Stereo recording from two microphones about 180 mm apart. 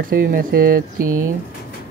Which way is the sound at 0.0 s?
50° right (ahead or behind).